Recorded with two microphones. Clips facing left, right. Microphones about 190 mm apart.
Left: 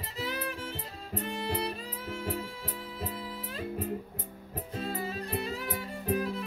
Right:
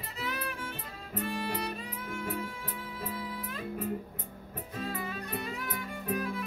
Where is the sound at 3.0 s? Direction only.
30° left (ahead or behind).